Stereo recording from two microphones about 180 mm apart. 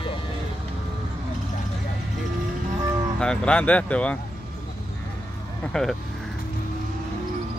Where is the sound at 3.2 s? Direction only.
5° left (ahead or behind).